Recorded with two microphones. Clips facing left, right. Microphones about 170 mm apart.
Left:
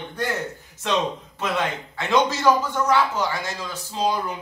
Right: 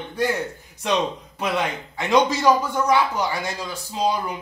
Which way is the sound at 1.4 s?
15° right (ahead or behind).